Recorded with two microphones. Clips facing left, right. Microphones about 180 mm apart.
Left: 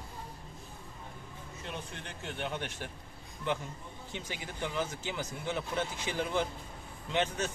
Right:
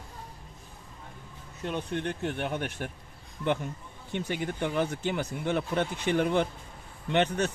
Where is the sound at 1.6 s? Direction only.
65° right (ahead or behind).